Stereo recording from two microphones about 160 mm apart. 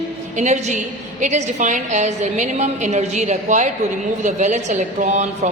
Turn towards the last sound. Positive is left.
turn(degrees=-50)  # may be behind; listen again after turning